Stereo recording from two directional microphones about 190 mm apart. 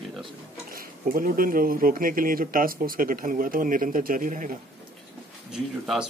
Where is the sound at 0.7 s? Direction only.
50° right (ahead or behind).